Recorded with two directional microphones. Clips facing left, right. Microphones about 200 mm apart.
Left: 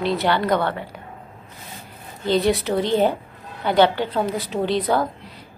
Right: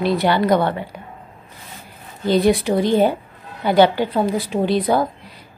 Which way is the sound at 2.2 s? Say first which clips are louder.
Right 3 dB; 15° right (ahead or behind).